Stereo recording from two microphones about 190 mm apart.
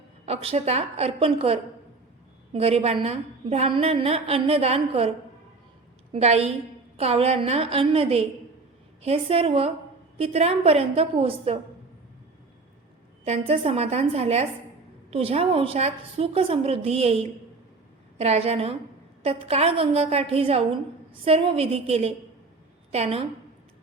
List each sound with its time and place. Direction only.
0.3 s a woman's voice: 35° right (ahead or behind)
6.1 s a woman's voice: 35° right (ahead or behind)
13.2 s a woman's voice: 35° right (ahead or behind)